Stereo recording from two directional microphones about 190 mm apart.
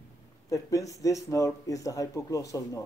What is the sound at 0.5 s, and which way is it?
Speech, 15° left (ahead or behind).